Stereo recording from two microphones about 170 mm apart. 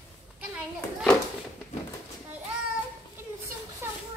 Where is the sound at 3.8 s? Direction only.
15° right (ahead or behind).